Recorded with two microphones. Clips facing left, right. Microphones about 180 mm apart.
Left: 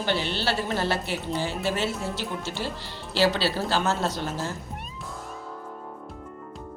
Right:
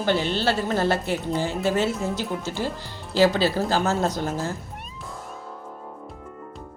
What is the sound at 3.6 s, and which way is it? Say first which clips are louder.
Speech: right 2 dB; 45° right (ahead or behind).